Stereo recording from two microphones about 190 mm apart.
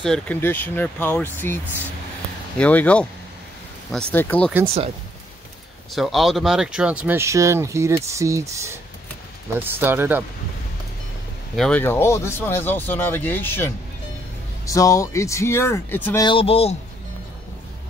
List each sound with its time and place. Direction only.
0.0 s speech: 5° left (ahead or behind)
5.9 s speech: centre (ahead or behind)
11.5 s speech: 5° left (ahead or behind)
14.7 s speech: 15° left (ahead or behind)
16.3 s speech: 30° left (ahead or behind)